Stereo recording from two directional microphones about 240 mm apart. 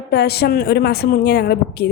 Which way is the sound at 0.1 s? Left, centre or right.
Left.